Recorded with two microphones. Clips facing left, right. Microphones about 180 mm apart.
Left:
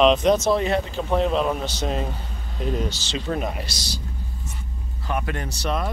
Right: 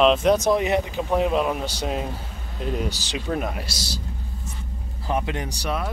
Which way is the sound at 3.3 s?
5° right (ahead or behind).